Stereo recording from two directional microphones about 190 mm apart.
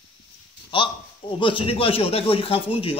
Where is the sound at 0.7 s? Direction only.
25° left (ahead or behind).